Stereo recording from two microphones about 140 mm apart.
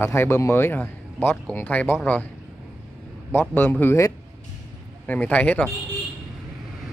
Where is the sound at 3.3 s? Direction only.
15° left (ahead or behind).